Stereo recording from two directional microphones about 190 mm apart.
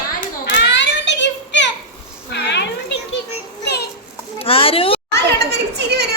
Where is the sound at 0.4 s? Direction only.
70° left (ahead or behind).